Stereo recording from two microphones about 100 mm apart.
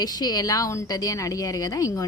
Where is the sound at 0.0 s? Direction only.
40° left (ahead or behind).